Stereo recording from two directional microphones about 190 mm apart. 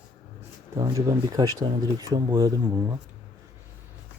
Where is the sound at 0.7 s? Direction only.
20° right (ahead or behind).